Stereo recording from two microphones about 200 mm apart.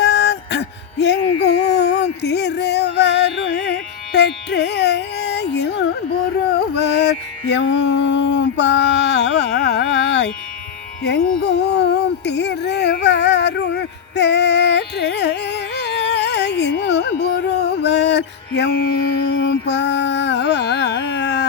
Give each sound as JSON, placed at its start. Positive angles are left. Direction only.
{"t": 0.0, "sound": "music", "side_deg": 60}
{"t": 6.5, "sound": "carnatic music", "side_deg": 55}
{"t": 11.0, "sound": "music", "side_deg": 55}
{"t": 19.3, "sound": "carnatic music", "side_deg": 60}